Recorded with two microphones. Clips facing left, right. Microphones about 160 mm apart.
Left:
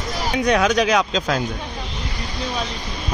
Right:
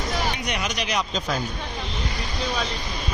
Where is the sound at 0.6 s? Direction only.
90° left.